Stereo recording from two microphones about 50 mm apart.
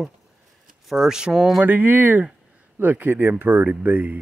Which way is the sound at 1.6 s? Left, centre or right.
Right.